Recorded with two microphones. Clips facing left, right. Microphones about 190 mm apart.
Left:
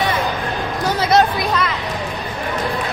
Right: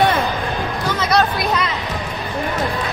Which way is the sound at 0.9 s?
25° left (ahead or behind).